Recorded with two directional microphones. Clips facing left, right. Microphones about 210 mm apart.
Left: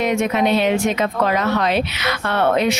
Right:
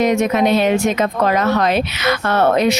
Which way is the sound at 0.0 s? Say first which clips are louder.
Right 3 dB; 40° right (ahead or behind).